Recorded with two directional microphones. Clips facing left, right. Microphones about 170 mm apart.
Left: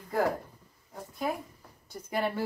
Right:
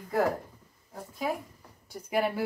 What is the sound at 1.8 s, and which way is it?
Speech, 10° right (ahead or behind).